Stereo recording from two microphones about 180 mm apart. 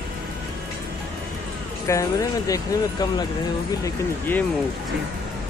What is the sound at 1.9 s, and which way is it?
Speech, 20° left (ahead or behind).